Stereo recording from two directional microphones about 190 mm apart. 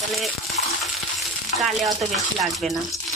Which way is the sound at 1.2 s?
Centre (ahead or behind).